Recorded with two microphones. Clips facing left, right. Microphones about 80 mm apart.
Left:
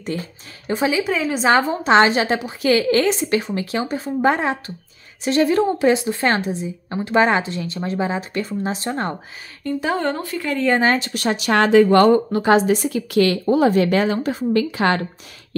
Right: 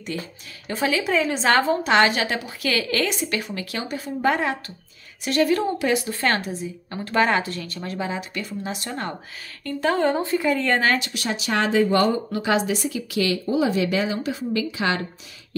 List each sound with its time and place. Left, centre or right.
0.1 s speech: left
0.7 s speech: centre
1.0 s a woman's voice: centre
1.8 s a woman's voice: left
9.6 s speech: centre
9.8 s a woman's voice: centre
10.2 s speech: right
10.5 s a woman's voice: centre
10.8 s a woman's voice: left
11.1 s speech: left
12.3 s speech: left